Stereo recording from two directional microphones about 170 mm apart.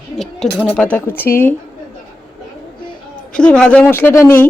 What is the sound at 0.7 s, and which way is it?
Speech, 10° left (ahead or behind).